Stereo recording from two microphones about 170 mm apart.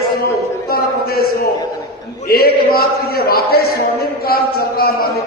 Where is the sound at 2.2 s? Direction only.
65° left (ahead or behind).